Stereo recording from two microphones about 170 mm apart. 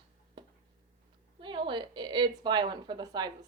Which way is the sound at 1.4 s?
30° right (ahead or behind).